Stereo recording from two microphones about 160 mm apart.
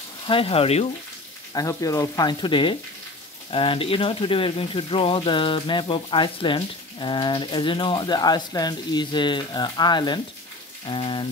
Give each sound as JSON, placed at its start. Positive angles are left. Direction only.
{"t": 0.3, "sound": "speech", "side_deg": 35}
{"t": 1.5, "sound": "speech", "side_deg": 20}